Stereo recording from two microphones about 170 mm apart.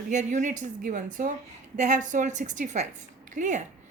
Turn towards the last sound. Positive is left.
turn(degrees=-45)  # may be behind; listen again after turning